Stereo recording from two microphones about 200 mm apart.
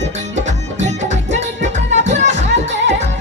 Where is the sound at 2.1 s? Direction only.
35° right (ahead or behind).